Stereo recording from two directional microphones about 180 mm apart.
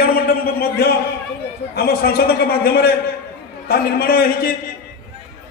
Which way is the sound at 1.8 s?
60° left (ahead or behind).